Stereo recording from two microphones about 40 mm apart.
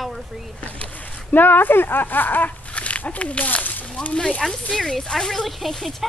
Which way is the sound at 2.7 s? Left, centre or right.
Left.